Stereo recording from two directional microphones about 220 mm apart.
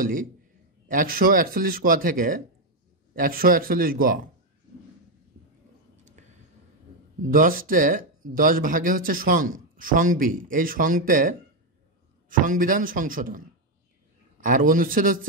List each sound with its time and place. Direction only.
0.0 s speech: 40° right (ahead or behind)
6.2 s a sound: 35° right (ahead or behind)
7.3 s speech: 40° right (ahead or behind)
14.4 s speech: 40° right (ahead or behind)